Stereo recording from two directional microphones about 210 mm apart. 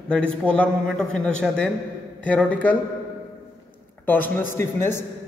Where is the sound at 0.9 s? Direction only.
5° left (ahead or behind).